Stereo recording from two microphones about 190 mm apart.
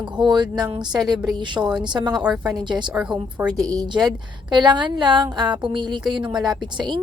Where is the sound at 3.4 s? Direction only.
20° right (ahead or behind).